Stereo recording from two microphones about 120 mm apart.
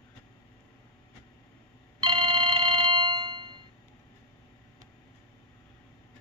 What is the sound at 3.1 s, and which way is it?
Music, 40° right (ahead or behind).